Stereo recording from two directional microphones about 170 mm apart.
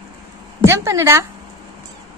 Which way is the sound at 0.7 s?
15° right (ahead or behind).